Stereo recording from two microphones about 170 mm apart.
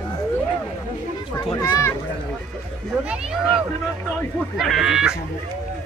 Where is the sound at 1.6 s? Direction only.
20° left (ahead or behind).